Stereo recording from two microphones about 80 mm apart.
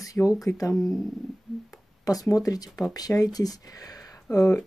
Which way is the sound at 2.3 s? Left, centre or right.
Left.